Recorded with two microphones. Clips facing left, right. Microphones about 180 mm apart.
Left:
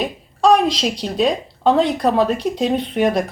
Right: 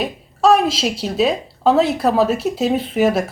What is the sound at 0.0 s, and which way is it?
Speech, 5° right (ahead or behind).